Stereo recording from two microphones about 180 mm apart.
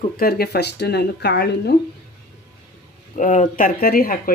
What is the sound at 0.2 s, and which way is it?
Speech, 60° left (ahead or behind).